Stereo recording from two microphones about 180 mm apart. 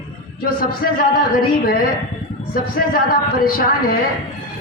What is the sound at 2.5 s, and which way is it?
A man's voice, 55° left (ahead or behind).